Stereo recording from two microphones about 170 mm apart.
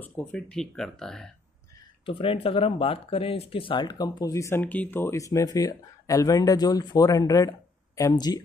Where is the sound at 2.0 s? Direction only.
30° left (ahead or behind).